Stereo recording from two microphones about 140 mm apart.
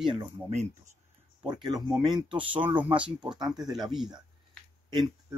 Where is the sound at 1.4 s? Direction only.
30° right (ahead or behind).